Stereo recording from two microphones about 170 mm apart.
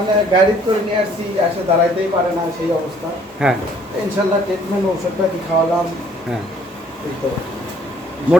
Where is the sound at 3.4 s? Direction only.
5° right (ahead or behind).